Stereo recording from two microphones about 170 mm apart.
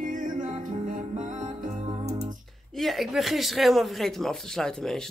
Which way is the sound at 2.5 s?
Centre (ahead or behind).